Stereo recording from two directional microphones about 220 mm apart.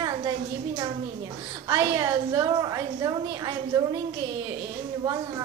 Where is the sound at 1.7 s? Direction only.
15° right (ahead or behind).